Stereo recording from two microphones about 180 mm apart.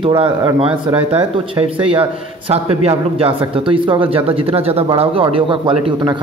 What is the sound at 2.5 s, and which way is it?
Speech, 35° right (ahead or behind).